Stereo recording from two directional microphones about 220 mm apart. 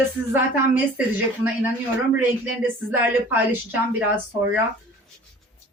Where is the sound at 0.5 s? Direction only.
10° right (ahead or behind).